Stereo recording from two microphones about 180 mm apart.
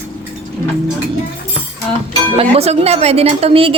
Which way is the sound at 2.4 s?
35° right (ahead or behind).